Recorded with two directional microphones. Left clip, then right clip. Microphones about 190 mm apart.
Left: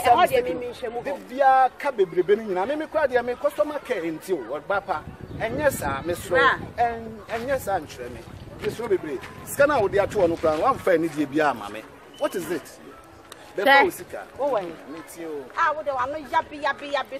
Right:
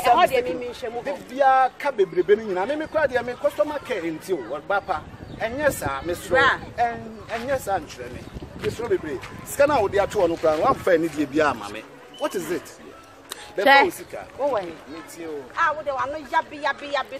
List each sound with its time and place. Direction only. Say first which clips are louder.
0.0 s speech: even; 20° right (ahead or behind)
1.0 s speech: even; 15° left (ahead or behind)
6.3 s speech: right 1 dB; 15° right (ahead or behind)
6.8 s speech: even; 15° left (ahead or behind); by 12.6 s centre (ahead or behind)
14.4 s speech: right 1 dB; 15° right (ahead or behind)
15.5 s speech: even; centre (ahead or behind)